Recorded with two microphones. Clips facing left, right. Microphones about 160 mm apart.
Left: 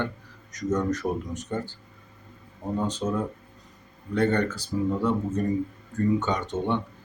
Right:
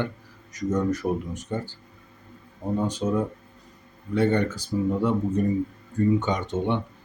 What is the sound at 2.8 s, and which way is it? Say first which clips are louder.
Speech: right 3 dB; 10° right (ahead or behind).